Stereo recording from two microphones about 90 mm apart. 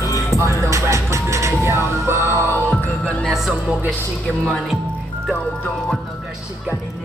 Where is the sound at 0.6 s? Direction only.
35° right (ahead or behind).